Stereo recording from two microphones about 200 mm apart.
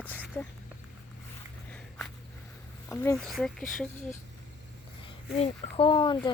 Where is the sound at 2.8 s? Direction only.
15° left (ahead or behind).